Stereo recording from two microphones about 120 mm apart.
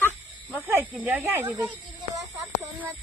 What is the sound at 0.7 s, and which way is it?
Speech, 15° right (ahead or behind).